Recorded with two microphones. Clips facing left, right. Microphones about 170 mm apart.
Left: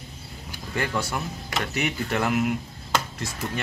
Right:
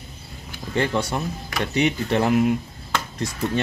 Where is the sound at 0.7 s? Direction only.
25° right (ahead or behind).